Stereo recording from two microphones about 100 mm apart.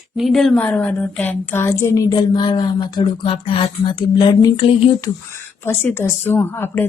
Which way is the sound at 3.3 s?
65° left (ahead or behind).